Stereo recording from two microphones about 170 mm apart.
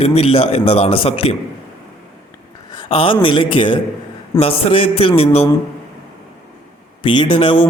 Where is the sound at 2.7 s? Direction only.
30° left (ahead or behind).